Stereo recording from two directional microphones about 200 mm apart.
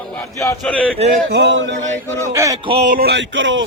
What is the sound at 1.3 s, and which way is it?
Speech, 65° right (ahead or behind).